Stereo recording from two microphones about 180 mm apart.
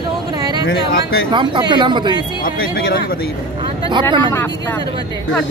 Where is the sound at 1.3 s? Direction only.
25° right (ahead or behind).